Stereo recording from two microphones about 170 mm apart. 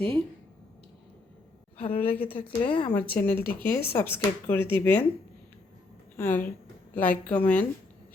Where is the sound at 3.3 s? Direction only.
60° left (ahead or behind).